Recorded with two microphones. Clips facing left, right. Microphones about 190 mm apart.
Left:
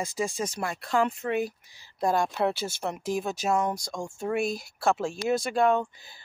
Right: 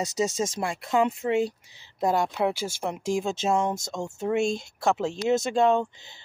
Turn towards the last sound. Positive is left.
turn(degrees=-25)  # may be behind; listen again after turning